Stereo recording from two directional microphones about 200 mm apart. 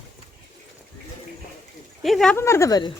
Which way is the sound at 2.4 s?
15° left (ahead or behind).